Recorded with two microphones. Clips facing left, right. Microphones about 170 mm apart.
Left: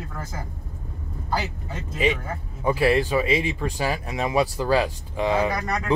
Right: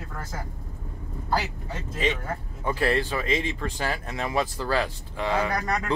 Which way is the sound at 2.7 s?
10° left (ahead or behind).